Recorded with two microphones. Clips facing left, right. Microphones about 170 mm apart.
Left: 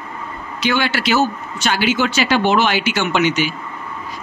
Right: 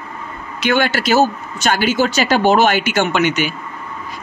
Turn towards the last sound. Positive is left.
turn(degrees=-50)  # may be behind; listen again after turning